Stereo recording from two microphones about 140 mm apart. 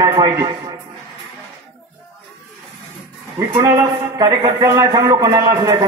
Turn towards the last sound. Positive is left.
turn(degrees=-25)  # may be behind; listen again after turning